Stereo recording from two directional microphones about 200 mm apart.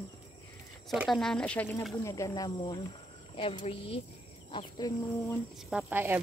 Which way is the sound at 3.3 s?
30° left (ahead or behind).